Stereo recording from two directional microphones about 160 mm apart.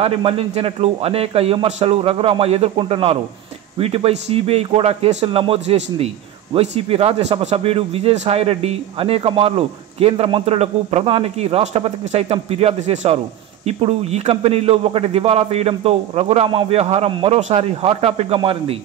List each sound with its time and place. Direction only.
0.0 s speech: 40° right (ahead or behind)